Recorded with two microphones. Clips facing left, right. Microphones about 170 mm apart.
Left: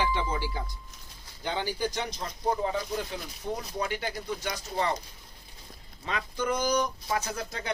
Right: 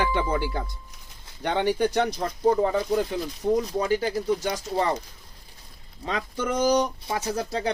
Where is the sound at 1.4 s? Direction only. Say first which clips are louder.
Right 8 dB; 60° right (ahead or behind).